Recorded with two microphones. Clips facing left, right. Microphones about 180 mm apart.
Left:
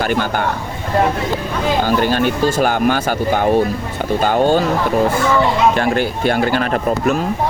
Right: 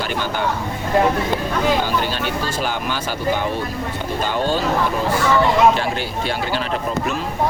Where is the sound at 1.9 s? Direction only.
50° left (ahead or behind).